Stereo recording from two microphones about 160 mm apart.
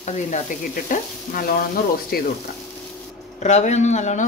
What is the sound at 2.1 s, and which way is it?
Frying, 70° left (ahead or behind).